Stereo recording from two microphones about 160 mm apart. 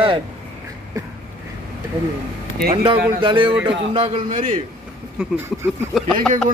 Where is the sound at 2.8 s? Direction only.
30° right (ahead or behind).